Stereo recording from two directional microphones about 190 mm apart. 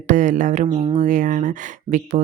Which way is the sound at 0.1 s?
40° right (ahead or behind).